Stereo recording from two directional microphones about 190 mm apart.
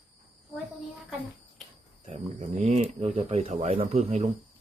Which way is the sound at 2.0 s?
35° right (ahead or behind).